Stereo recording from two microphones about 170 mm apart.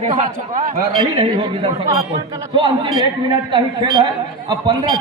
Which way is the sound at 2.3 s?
20° right (ahead or behind).